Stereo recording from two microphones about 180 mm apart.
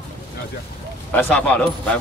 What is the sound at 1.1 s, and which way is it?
Speech, 10° left (ahead or behind).